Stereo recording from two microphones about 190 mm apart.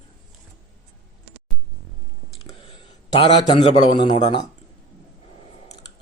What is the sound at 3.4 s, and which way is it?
Speech, 25° left (ahead or behind).